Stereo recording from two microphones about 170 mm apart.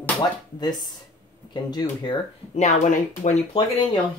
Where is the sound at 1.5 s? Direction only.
25° left (ahead or behind).